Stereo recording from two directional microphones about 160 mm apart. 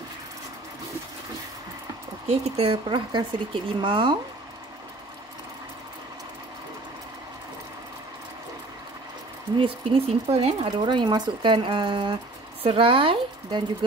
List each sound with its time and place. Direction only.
2.2 s speech: 40° right (ahead or behind)
9.6 s speech: 35° right (ahead or behind)